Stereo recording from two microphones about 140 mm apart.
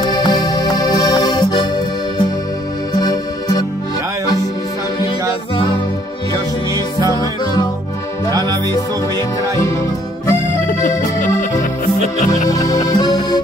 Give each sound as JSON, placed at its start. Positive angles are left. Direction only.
{"t": 0.1, "sound": "music", "side_deg": 30}
{"t": 3.0, "sound": "music", "side_deg": 25}
{"t": 6.7, "sound": "music", "side_deg": -25}
{"t": 8.3, "sound": "music", "side_deg": -30}
{"t": 10.8, "sound": "music", "side_deg": 65}
{"t": 12.4, "sound": "music", "side_deg": 25}